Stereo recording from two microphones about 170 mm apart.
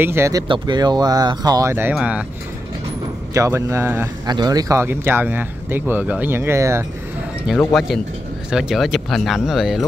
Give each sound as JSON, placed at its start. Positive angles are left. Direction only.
{"t": 0.0, "sound": "speech", "side_deg": -15}
{"t": 3.3, "sound": "speech", "side_deg": -20}
{"t": 7.4, "sound": "speech", "side_deg": 0}